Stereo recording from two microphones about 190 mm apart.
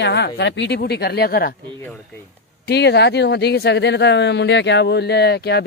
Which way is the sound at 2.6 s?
60° left (ahead or behind).